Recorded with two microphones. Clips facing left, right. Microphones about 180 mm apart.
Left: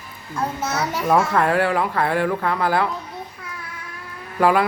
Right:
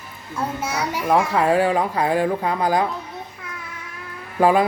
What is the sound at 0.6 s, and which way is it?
A child's voice, 10° right (ahead or behind).